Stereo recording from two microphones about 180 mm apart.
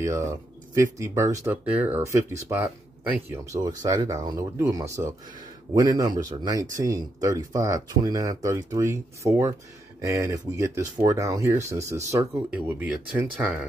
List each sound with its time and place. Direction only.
0.0 s speech: 15° right (ahead or behind)